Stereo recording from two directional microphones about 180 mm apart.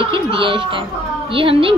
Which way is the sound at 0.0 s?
30° right (ahead or behind).